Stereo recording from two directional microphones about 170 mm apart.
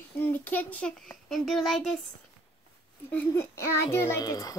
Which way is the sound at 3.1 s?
15° left (ahead or behind).